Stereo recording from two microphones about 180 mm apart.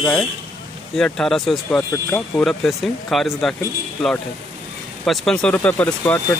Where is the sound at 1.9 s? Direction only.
10° left (ahead or behind).